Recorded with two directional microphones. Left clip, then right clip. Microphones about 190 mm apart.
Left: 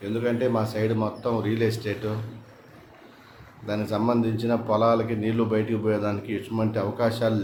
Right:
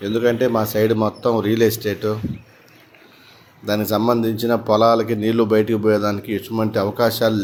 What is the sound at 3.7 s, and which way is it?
Speech, 35° right (ahead or behind).